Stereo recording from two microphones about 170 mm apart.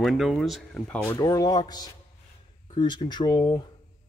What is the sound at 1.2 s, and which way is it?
Speech, 20° left (ahead or behind).